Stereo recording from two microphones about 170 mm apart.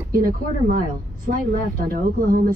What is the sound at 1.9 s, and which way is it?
Speech, 55° right (ahead or behind).